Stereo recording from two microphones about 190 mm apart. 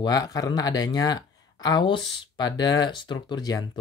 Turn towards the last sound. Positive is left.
turn(degrees=20)  # may be behind; listen again after turning